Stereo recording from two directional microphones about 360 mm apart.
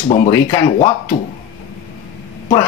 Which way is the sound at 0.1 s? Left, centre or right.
Centre.